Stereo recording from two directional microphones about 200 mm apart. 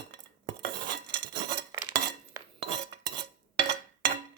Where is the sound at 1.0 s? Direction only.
60° right (ahead or behind).